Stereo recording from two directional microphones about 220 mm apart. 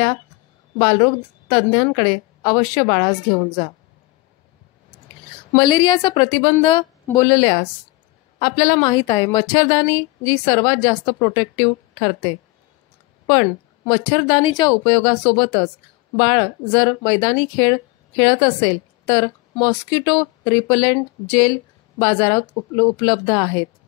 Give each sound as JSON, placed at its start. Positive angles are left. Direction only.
{"t": 0.7, "sound": "a woman's voice", "side_deg": 20}
{"t": 5.6, "sound": "a woman's voice", "side_deg": 20}
{"t": 13.3, "sound": "a woman's voice", "side_deg": 20}